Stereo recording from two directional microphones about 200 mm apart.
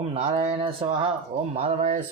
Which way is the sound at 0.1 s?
30° right (ahead or behind).